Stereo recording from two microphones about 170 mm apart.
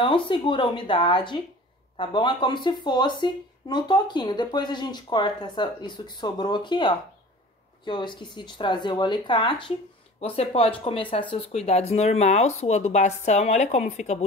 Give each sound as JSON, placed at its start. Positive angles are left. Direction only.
{"t": 0.0, "sound": "speech", "side_deg": 30}